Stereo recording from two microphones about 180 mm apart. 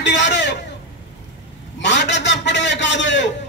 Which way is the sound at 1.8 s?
75° left (ahead or behind).